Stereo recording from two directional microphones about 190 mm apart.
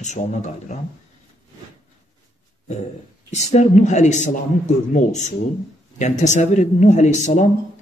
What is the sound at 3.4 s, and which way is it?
Speech, 35° left (ahead or behind).